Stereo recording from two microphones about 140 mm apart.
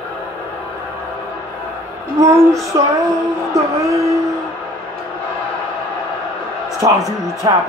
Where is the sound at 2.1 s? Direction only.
25° right (ahead or behind).